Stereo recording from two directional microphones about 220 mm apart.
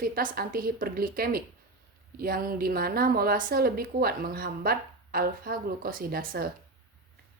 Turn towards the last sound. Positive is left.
turn(degrees=-40)  # may be behind; listen again after turning